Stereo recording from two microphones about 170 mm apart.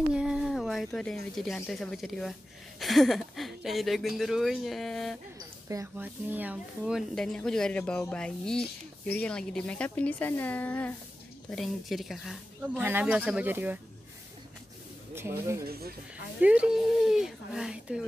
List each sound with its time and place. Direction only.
0.1 s speech: 5° right (ahead or behind)
5.7 s speech: 15° right (ahead or behind)
12.7 s speech: 10° right (ahead or behind)
15.1 s speech: 15° right (ahead or behind)
15.6 s speech: 65° right (ahead or behind)
16.3 s speech: 5° right (ahead or behind)